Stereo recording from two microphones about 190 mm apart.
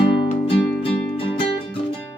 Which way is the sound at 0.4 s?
30° left (ahead or behind).